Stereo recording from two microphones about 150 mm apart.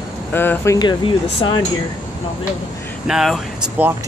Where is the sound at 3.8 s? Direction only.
10° right (ahead or behind).